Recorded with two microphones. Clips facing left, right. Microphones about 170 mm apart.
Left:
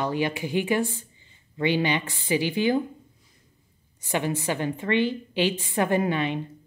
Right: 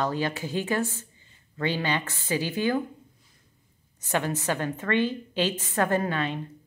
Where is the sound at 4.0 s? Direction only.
10° left (ahead or behind).